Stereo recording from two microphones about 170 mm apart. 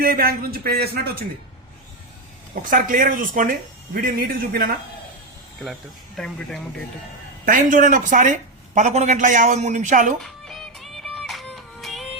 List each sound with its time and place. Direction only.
0.0 s a man's voice: 60° right (ahead or behind)
2.6 s a man's voice: 55° right (ahead or behind)
6.1 s speech: 5° left (ahead or behind)
7.4 s speech: 50° right (ahead or behind)
10.2 s music: centre (ahead or behind)